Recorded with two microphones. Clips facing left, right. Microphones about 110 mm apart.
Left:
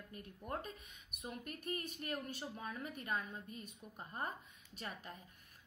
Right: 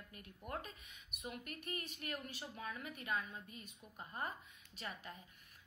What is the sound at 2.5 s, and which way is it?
Speech, 35° left (ahead or behind).